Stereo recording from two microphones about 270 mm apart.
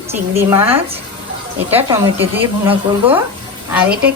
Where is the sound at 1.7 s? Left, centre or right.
Centre.